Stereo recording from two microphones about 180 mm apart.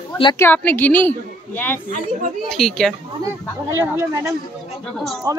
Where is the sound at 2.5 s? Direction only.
Centre (ahead or behind).